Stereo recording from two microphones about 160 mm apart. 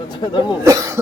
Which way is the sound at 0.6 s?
20° right (ahead or behind).